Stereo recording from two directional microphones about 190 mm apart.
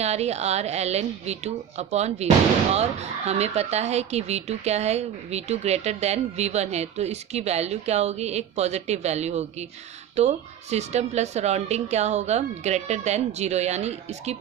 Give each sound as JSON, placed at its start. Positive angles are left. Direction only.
{"t": 0.0, "sound": "speech", "side_deg": -35}